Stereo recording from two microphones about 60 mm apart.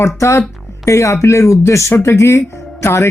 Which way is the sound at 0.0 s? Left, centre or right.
Left.